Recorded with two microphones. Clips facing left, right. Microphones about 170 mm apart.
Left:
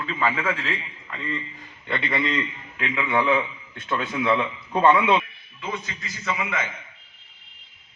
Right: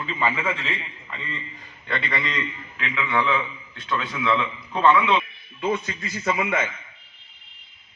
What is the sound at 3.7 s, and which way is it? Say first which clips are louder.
Speech: left 1 dB; 50° left (ahead or behind).